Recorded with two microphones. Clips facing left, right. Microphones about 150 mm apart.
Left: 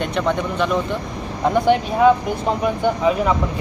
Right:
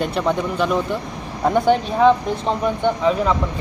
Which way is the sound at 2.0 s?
5° left (ahead or behind).